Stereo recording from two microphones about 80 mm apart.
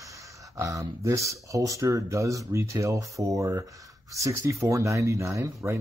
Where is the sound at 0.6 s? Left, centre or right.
Right.